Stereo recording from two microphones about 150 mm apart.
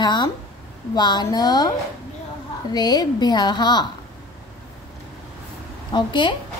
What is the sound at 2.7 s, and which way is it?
A woman's voice, 25° left (ahead or behind).